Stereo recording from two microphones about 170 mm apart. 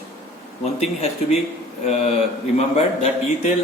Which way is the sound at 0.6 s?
40° left (ahead or behind).